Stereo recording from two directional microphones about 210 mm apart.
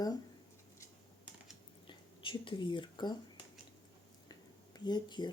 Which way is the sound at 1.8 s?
25° left (ahead or behind).